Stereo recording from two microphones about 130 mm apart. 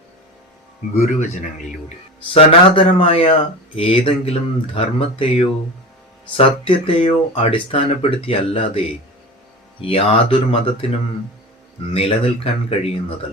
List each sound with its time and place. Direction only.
0.9 s speech: 70° left (ahead or behind)
2.3 s speech: 40° left (ahead or behind)
9.8 s speech: 45° left (ahead or behind)
11.9 s speech: 50° left (ahead or behind)